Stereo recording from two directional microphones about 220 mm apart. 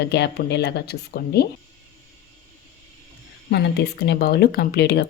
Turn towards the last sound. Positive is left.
turn(degrees=45)  # may be behind; listen again after turning